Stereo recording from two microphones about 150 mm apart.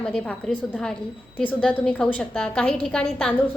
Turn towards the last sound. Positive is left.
turn(degrees=5)  # may be behind; listen again after turning